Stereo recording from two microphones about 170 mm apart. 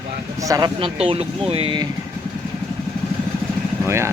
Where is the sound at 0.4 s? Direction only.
20° right (ahead or behind).